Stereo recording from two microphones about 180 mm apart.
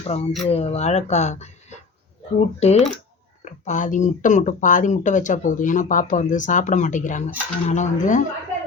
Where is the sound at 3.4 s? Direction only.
40° left (ahead or behind).